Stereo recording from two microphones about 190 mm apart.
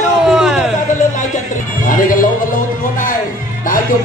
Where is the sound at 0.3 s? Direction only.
5° right (ahead or behind).